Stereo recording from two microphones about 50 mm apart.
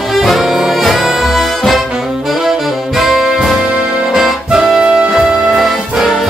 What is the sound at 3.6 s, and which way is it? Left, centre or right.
Music, right.